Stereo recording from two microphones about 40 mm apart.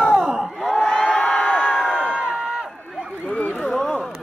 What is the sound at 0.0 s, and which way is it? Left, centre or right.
Crowd, right.